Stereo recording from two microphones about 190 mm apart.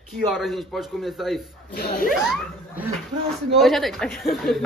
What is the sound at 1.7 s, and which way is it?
Speech, 55° left (ahead or behind).